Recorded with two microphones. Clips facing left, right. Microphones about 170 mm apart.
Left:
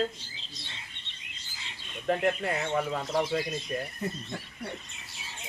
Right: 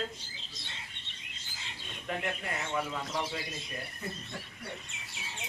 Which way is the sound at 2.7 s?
50° left (ahead or behind).